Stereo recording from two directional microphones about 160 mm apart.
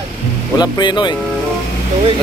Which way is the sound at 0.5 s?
25° left (ahead or behind).